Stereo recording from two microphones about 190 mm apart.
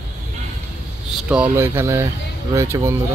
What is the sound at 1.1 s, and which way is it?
Speech, 5° right (ahead or behind).